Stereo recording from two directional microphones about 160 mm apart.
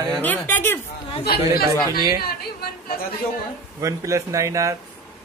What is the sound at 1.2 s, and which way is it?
Speech, 75° left (ahead or behind).